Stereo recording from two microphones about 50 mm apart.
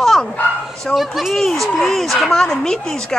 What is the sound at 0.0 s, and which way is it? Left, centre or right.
Bow-wow, centre.